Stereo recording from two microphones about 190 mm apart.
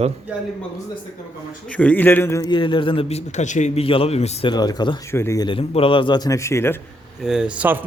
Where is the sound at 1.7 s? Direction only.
5° left (ahead or behind).